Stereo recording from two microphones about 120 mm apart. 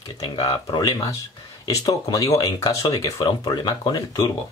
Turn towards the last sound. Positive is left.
turn(degrees=30)  # may be behind; listen again after turning